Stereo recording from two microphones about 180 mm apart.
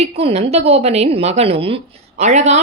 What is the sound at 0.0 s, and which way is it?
A woman's voice, 35° right (ahead or behind).